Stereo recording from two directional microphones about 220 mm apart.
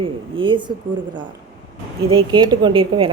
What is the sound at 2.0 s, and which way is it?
A woman's voice, 25° right (ahead or behind).